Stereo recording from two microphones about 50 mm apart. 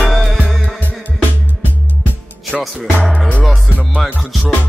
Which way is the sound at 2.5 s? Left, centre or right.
Right.